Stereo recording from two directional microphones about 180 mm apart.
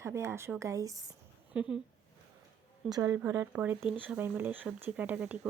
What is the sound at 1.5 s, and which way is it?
Speech, 5° right (ahead or behind).